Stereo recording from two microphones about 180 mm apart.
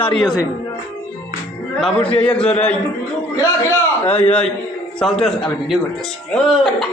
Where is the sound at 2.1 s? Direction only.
5° left (ahead or behind).